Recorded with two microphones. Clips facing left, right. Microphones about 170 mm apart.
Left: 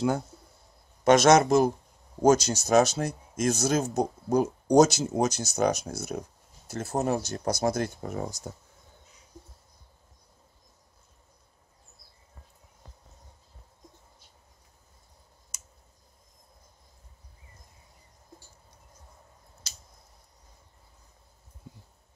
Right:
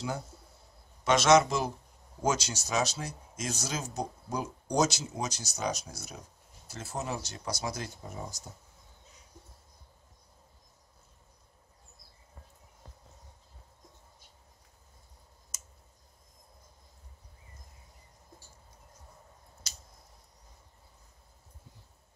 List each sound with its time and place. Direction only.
1.0 s speech: 45° left (ahead or behind); by 8.4 s 65° left (ahead or behind)